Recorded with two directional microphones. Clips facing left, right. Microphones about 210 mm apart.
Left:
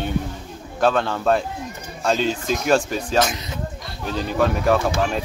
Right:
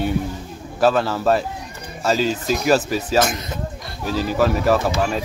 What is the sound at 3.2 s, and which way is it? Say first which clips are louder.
Speech: right 2 dB; 50° right (ahead or behind).